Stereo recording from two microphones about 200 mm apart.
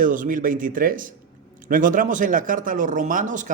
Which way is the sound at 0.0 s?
40° right (ahead or behind).